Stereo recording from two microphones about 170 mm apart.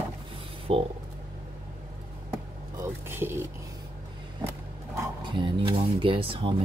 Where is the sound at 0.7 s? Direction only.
35° right (ahead or behind).